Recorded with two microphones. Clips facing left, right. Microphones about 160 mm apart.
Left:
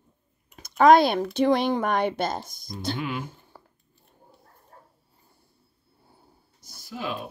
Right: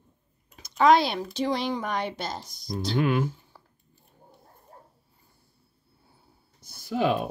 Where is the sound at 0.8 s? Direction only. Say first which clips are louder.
Left 4 dB; 50° left (ahead or behind).